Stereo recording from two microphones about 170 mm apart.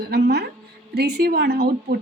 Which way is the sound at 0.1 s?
70° right (ahead or behind).